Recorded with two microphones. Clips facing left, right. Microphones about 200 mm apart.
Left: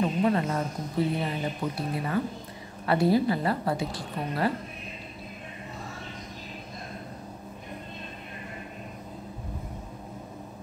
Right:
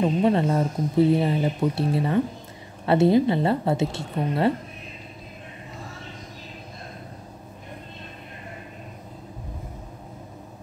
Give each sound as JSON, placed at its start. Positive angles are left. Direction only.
{"t": 0.0, "sound": "speech", "side_deg": -25}